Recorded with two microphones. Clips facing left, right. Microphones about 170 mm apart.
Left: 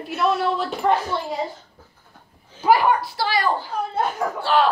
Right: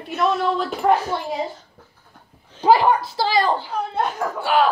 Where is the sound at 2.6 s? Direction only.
30° right (ahead or behind).